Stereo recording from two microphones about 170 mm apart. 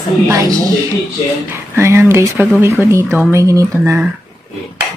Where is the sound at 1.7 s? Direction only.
15° right (ahead or behind).